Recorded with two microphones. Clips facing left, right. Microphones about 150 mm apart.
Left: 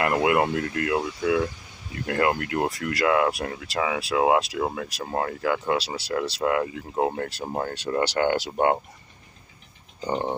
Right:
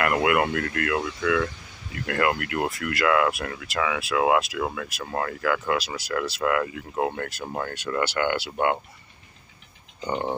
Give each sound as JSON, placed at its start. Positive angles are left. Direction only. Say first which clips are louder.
{"t": 0.0, "sound": "speech", "louder": "left 1 dB", "side_deg": 25}
{"t": 9.9, "sound": "speech", "louder": "left 1 dB", "side_deg": 35}